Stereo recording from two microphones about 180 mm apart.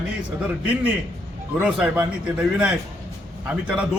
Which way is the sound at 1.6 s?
10° right (ahead or behind).